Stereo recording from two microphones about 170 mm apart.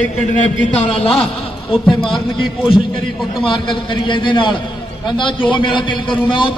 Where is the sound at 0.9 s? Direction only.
35° left (ahead or behind).